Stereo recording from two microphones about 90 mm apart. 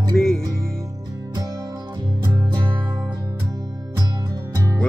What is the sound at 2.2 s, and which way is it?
Music, 55° right (ahead or behind).